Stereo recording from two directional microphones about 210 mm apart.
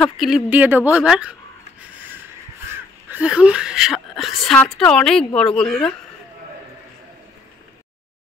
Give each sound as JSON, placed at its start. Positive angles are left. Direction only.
{"t": 0.0, "sound": "a woman's voice", "side_deg": 0}
{"t": 3.1, "sound": "a woman's voice", "side_deg": -5}